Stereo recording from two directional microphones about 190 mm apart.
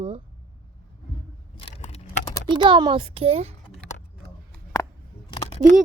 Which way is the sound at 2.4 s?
25° right (ahead or behind).